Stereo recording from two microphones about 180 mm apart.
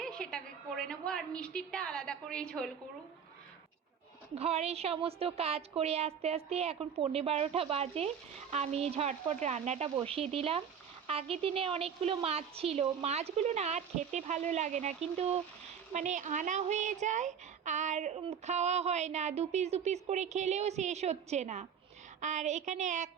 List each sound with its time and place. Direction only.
0.0 s a woman's voice: 5° left (ahead or behind)
4.4 s a woman's voice: 35° right (ahead or behind)